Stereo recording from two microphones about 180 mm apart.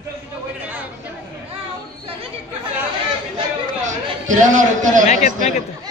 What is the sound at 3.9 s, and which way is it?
A man's voice, 45° right (ahead or behind).